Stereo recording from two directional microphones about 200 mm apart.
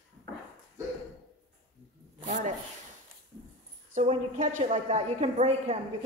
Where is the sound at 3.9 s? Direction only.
40° right (ahead or behind).